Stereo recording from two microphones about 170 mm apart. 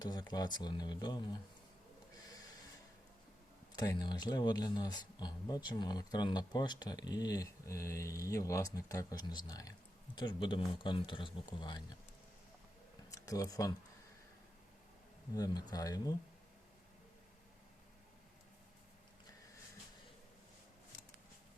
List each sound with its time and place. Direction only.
0.0 s speech: 25° left (ahead or behind)
3.8 s speech: 25° left (ahead or behind)
13.1 s speech: 20° left (ahead or behind)
15.4 s speech: 25° left (ahead or behind)